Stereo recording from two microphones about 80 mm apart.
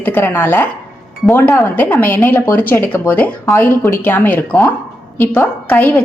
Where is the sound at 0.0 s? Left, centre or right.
Left.